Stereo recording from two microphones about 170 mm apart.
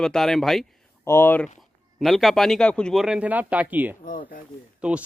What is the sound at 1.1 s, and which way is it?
Speech, 15° left (ahead or behind).